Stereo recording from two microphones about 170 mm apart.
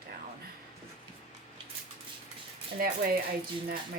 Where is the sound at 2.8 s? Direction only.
60° right (ahead or behind).